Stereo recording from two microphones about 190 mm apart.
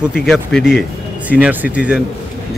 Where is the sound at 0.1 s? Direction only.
Centre (ahead or behind).